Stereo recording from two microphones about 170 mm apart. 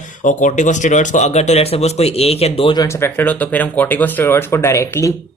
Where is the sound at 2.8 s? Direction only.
15° left (ahead or behind).